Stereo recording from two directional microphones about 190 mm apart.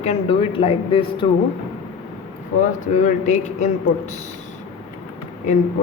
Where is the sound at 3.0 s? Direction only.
40° left (ahead or behind).